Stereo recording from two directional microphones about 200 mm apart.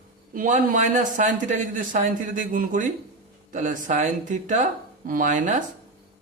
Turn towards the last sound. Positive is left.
turn(degrees=-40)  # may be behind; listen again after turning